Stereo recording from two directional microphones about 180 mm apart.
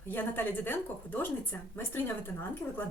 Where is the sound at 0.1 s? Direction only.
10° left (ahead or behind).